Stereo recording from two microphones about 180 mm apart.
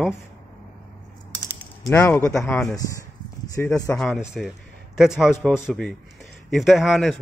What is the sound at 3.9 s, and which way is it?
A man's voice, centre (ahead or behind).